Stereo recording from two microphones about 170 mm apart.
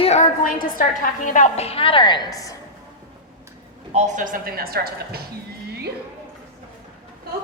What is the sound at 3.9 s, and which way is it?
A man's voice, 45° right (ahead or behind).